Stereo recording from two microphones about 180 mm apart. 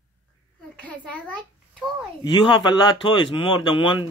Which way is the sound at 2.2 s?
25° left (ahead or behind).